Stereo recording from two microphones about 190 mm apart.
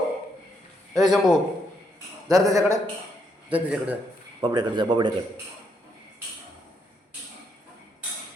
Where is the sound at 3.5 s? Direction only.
10° right (ahead or behind).